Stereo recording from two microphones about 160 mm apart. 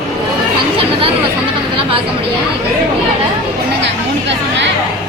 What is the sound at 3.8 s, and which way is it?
Chatter, 90° right.